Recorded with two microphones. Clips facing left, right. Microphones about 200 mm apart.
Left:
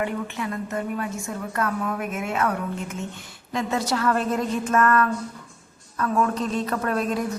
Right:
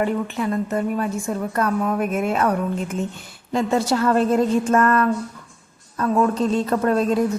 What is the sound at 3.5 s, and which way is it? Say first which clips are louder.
A woman's voice: right 5 dB; 30° right (ahead or behind).